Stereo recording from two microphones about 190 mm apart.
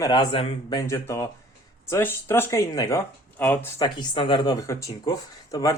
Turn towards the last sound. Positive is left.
turn(degrees=20)  # may be behind; listen again after turning